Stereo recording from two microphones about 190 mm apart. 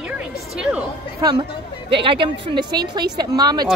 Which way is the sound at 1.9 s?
25° right (ahead or behind).